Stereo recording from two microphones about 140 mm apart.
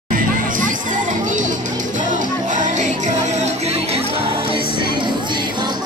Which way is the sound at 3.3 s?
50° right (ahead or behind).